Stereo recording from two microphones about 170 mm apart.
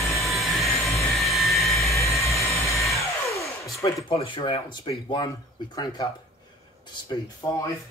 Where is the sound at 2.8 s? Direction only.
20° left (ahead or behind).